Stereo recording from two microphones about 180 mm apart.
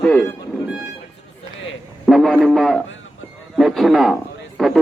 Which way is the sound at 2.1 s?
Centre (ahead or behind).